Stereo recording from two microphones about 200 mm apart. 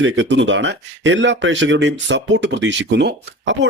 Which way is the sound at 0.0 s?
65° right (ahead or behind).